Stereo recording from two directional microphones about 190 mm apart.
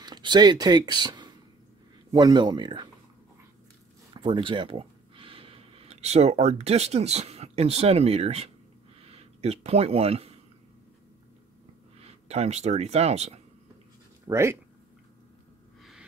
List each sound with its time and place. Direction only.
0.0 s speech: 20° right (ahead or behind)
4.1 s speech: 25° right (ahead or behind)
12.0 s speech: 35° right (ahead or behind)
14.2 s speech: 15° right (ahead or behind)
15.8 s gasp: centre (ahead or behind)